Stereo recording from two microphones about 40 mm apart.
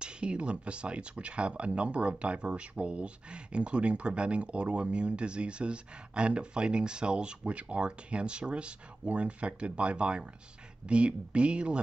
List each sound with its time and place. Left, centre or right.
0.0 s speech: right